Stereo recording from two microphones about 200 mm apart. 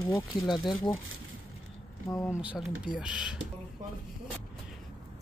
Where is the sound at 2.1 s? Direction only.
15° left (ahead or behind).